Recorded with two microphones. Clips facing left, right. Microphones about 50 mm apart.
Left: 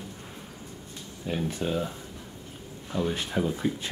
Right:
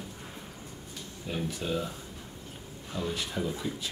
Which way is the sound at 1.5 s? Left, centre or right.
Left.